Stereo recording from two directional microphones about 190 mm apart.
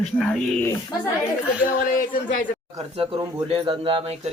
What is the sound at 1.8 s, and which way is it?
Speech, 45° left (ahead or behind).